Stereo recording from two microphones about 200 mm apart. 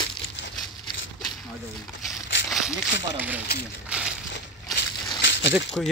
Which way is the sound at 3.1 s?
10° right (ahead or behind).